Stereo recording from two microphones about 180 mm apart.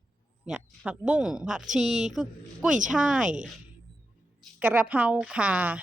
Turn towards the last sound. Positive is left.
turn(degrees=-10)  # may be behind; listen again after turning